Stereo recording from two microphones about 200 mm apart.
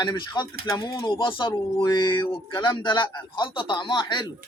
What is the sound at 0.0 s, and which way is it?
Speech, 20° left (ahead or behind).